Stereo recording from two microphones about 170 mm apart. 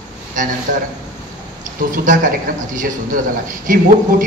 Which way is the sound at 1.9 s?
50° right (ahead or behind).